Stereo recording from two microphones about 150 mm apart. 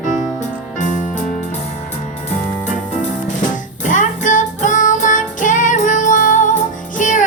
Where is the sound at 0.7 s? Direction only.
55° left (ahead or behind).